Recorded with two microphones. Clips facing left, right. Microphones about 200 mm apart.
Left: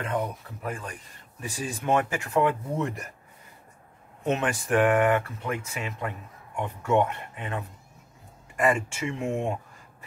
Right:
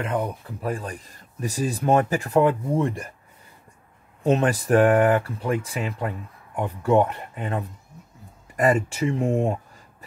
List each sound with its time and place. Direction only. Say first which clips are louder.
0.1 s speech: right 3 dB; 35° right (ahead or behind)
4.2 s speech: right 6 dB; 35° right (ahead or behind)